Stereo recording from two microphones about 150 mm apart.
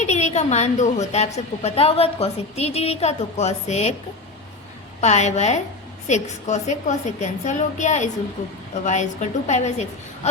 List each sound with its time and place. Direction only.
0.0 s a woman's voice: 50° left (ahead or behind)
4.9 s a woman's voice: 50° left (ahead or behind)